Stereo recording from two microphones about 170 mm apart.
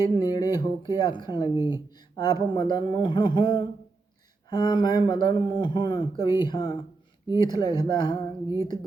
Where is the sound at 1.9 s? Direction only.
25° left (ahead or behind).